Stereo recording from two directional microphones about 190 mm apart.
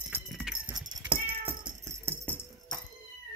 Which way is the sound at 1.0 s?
25° right (ahead or behind).